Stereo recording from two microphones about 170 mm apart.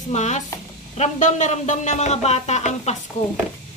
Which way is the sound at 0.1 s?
45° left (ahead or behind).